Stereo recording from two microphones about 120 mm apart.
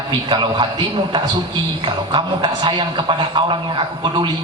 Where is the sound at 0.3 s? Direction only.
40° right (ahead or behind).